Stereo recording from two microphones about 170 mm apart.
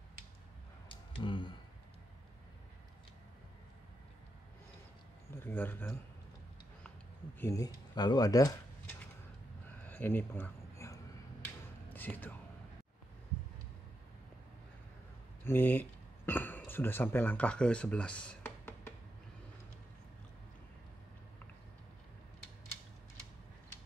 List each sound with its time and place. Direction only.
0.8 s a sound: 25° left (ahead or behind)
5.3 s speech: 10° left (ahead or behind)
7.3 s speech: 15° left (ahead or behind)
9.8 s a sound: 10° left (ahead or behind)
11.9 s speech: 10° left (ahead or behind)
15.4 s speech: 10° left (ahead or behind)